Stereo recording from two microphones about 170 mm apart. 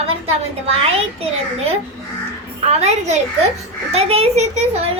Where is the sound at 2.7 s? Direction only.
40° right (ahead or behind).